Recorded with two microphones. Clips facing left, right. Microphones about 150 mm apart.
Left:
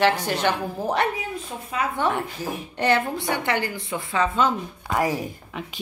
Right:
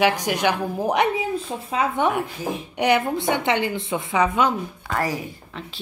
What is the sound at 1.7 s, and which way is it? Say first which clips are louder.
A woman's voice: right 3 dB; 25° right (ahead or behind).